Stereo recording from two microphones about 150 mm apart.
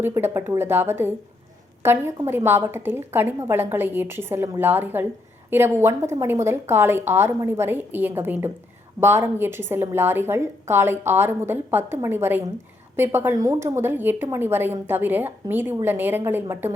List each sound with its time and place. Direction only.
0.0 s a woman's voice: 15° right (ahead or behind)